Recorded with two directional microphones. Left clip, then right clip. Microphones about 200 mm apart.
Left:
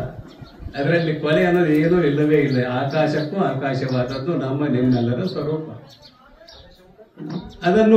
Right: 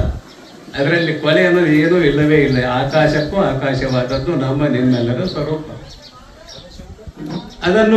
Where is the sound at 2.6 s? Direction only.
15° left (ahead or behind).